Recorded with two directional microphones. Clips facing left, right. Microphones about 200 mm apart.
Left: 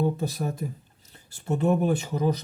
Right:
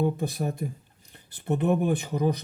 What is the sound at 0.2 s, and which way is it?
Speech, 15° right (ahead or behind).